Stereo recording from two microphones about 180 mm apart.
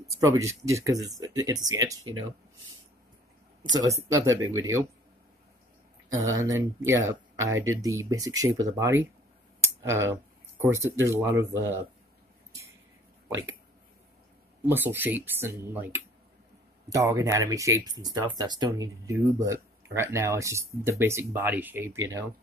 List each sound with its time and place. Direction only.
0.0 s speech: 15° right (ahead or behind)
3.8 s speech: 15° right (ahead or behind)
6.0 s speech: 20° right (ahead or behind)
9.7 s a sound: 15° right (ahead or behind)
10.6 s speech: 15° right (ahead or behind)
14.7 s speech: 10° right (ahead or behind)